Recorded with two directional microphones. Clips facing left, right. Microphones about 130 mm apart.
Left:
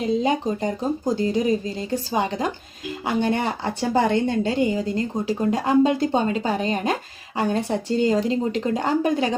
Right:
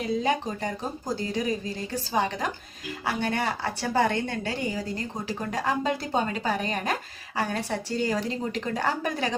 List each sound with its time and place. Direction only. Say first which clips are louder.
0.2 s a woman's voice: left 5 dB; 20° left (ahead or behind)